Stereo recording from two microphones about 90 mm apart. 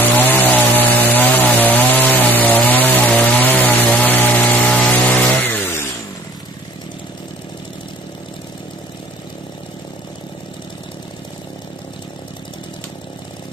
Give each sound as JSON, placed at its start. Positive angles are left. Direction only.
{"t": 0.0, "sound": "chainsaw", "side_deg": 20}